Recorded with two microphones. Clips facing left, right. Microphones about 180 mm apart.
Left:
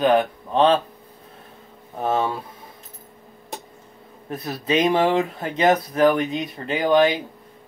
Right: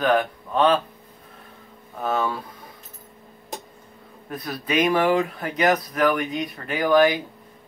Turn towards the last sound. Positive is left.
turn(degrees=20)  # may be behind; listen again after turning